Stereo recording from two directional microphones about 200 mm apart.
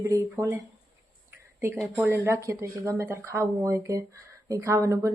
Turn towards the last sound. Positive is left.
turn(degrees=-15)  # may be behind; listen again after turning